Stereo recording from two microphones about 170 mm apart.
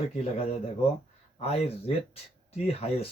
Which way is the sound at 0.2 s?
35° left (ahead or behind).